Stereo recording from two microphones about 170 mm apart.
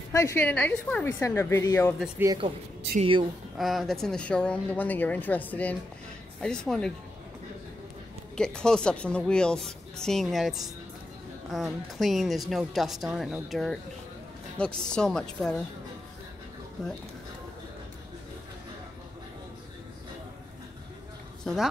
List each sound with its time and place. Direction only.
0.1 s speech: 15° left (ahead or behind)
2.2 s speech: 10° right (ahead or behind)
3.0 s a woman's voice: 30° right (ahead or behind)
3.5 s a woman's voice: centre (ahead or behind)
8.4 s a woman's voice: 5° left (ahead or behind)
16.8 s a woman's voice: centre (ahead or behind)